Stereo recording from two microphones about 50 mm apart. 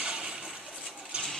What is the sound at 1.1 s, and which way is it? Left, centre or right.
Ratchet, centre.